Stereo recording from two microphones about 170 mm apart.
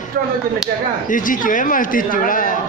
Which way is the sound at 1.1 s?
50° left (ahead or behind).